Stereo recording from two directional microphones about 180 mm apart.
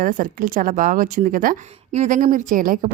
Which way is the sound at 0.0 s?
50° right (ahead or behind).